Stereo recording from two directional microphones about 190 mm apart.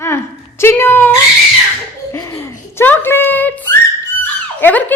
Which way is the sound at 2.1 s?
15° left (ahead or behind).